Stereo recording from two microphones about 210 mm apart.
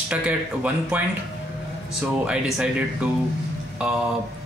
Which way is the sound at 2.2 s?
5° right (ahead or behind).